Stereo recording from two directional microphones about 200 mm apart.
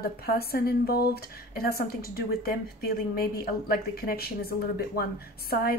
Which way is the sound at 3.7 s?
50° left (ahead or behind).